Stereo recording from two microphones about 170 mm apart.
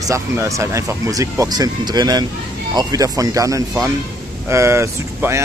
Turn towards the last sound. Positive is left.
turn(degrees=-15)  # may be behind; listen again after turning